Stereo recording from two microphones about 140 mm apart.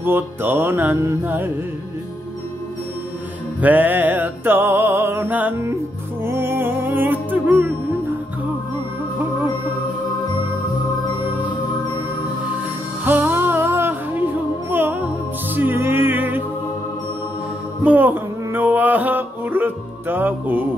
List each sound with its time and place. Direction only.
0.0 s music: 15° right (ahead or behind)
3.6 s music: 10° right (ahead or behind)
13.0 s music: 15° right (ahead or behind)
17.8 s music: 15° right (ahead or behind)